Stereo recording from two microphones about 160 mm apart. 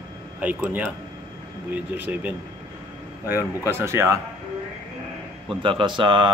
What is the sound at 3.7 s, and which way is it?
Speech, 15° right (ahead or behind).